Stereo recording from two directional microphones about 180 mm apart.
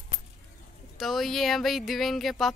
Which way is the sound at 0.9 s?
Centre (ahead or behind).